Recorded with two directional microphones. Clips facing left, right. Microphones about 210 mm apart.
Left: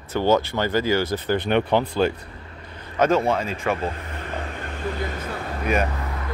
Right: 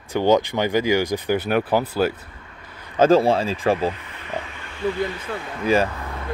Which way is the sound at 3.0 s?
30° right (ahead or behind).